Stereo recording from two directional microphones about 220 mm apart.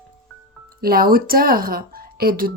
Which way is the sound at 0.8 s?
45° right (ahead or behind).